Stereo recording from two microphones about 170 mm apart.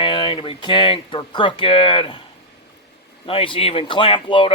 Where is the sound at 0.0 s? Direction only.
30° left (ahead or behind).